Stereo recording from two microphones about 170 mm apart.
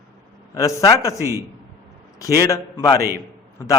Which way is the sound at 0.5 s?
20° left (ahead or behind).